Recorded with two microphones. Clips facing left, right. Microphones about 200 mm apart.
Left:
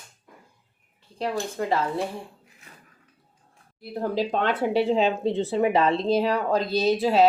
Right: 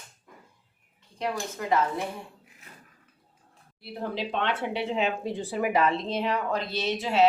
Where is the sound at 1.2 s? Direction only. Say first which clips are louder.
Left 4 dB; 30° left (ahead or behind).